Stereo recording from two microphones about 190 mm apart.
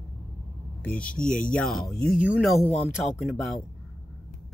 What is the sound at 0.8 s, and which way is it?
Speech, 5° left (ahead or behind).